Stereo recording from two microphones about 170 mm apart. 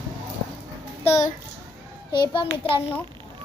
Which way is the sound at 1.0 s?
40° left (ahead or behind).